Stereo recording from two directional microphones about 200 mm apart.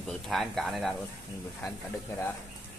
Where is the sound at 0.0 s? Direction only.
Centre (ahead or behind).